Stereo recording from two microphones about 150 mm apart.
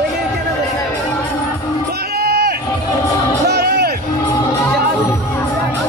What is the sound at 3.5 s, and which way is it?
Music, 90° right.